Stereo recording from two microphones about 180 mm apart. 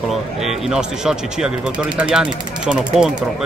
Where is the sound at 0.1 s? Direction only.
Centre (ahead or behind).